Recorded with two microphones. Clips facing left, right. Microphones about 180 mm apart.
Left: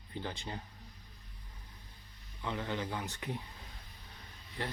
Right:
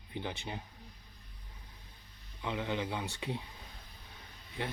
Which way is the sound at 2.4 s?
15° right (ahead or behind).